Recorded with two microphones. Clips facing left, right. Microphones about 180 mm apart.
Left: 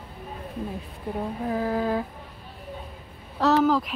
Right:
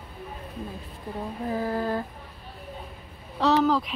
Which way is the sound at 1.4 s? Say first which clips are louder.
Left 1 dB; centre (ahead or behind).